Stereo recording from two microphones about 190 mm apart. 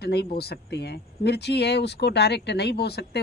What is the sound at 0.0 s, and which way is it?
Speech, 60° left (ahead or behind).